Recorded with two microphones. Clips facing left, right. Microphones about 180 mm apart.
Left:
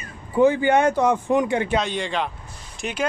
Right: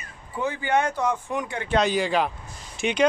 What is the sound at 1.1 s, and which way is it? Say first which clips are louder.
Speech: left 8 dB; 90° left.